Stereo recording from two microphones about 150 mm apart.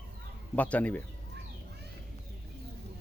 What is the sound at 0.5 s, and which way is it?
Speech, 10° left (ahead or behind).